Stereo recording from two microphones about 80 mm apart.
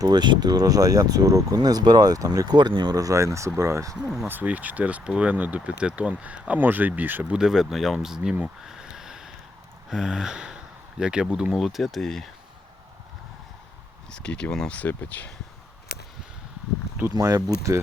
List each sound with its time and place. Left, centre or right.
0.0 s speech: right
1.5 s speech: right
2.6 s speech: right
2.9 s speech: right
4.3 s speech: right
7.3 s speech: centre
14.1 s speech: centre
17.2 s speech: right